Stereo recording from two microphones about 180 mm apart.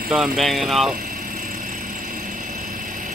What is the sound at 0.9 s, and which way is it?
Vehicle, 55° right (ahead or behind).